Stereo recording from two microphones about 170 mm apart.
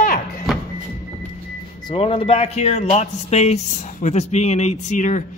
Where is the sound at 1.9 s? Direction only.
30° left (ahead or behind).